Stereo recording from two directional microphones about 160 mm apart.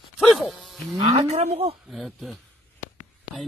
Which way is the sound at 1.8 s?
Centre (ahead or behind).